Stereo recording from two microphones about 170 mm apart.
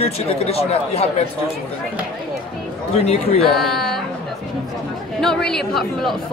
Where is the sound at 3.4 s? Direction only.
Centre (ahead or behind).